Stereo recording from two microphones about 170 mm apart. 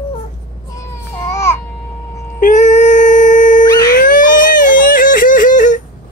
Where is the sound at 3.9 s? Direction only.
50° left (ahead or behind).